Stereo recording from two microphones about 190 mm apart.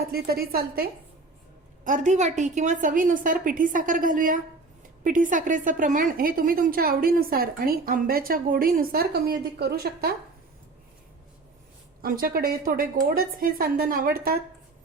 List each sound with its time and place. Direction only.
0.1 s a woman's voice: 55° right (ahead or behind)
12.0 s a woman's voice: 50° right (ahead or behind)